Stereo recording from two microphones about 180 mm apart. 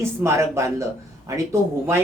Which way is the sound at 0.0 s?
15° right (ahead or behind).